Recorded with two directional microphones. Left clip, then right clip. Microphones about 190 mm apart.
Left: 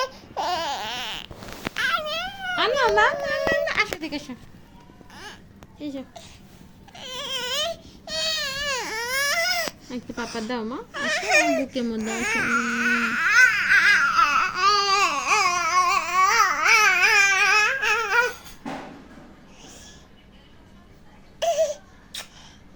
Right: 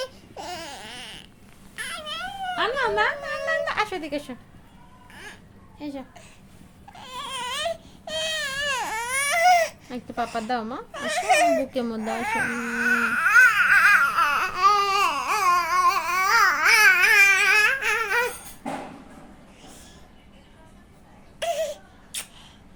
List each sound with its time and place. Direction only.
0.0 s baby cry: 15° right (ahead or behind)
1.7 s a sound: 5° right (ahead or behind)
3.5 s a sound: 15° right (ahead or behind)
5.1 s a sound: centre (ahead or behind)
5.8 s speech: 40° right (ahead or behind)
6.9 s baby cry: 5° right (ahead or behind); by 9.7 s 20° right (ahead or behind)
10.5 s speech: 30° right (ahead or behind)
10.9 s speech: 10° right (ahead or behind)
11.7 s speech: 30° right (ahead or behind)
12.0 s speech: centre (ahead or behind)
12.4 s baby cry: 15° right (ahead or behind)
21.3 s a sound: 10° right (ahead or behind)